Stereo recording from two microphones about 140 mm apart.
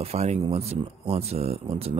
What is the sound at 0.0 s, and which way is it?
Speech, 50° right (ahead or behind).